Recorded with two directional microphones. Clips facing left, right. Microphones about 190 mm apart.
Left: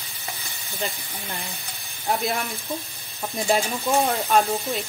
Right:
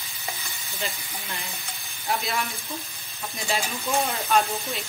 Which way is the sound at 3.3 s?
55° left (ahead or behind).